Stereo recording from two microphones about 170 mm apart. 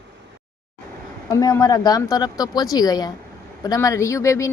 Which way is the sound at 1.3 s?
20° left (ahead or behind).